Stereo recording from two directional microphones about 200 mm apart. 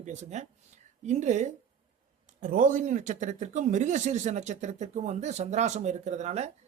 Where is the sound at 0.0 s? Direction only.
35° right (ahead or behind).